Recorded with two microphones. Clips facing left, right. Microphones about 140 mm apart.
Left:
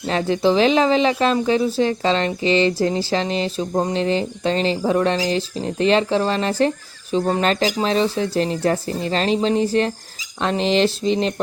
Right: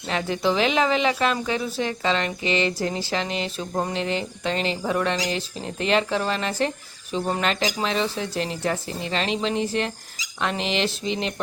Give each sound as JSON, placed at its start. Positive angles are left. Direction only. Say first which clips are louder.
{"t": 0.1, "sound": "speech", "louder": "left 6 dB", "side_deg": 35}